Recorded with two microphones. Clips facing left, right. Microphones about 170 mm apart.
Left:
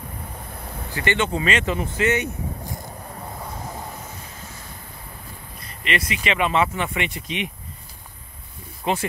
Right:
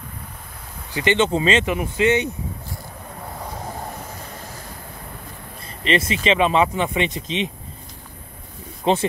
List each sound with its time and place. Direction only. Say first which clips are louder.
0.9 s speech: right 4 dB; 20° right (ahead or behind)
5.9 s speech: right 5 dB; 25° right (ahead or behind)
8.9 s speech: right 5 dB; 25° right (ahead or behind)